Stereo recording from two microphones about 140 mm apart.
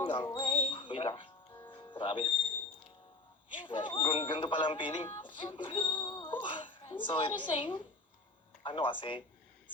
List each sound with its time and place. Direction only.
0.0 s music: 30° left (ahead or behind)
1.9 s speech: 35° left (ahead or behind)
3.5 s speech: 35° left (ahead or behind)